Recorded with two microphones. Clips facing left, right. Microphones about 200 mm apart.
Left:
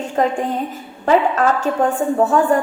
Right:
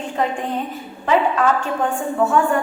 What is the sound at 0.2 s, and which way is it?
A woman's voice, 40° left (ahead or behind).